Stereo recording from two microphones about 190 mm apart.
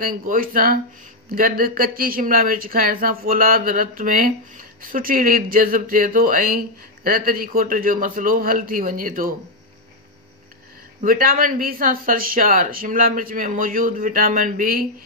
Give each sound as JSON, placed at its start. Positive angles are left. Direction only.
{"t": 0.0, "sound": "speech", "side_deg": -50}
{"t": 11.0, "sound": "speech", "side_deg": -45}